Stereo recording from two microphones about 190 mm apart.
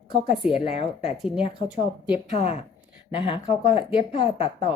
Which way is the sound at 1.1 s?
Centre (ahead or behind).